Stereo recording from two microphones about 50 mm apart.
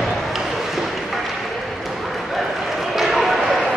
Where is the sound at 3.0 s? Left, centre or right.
Centre.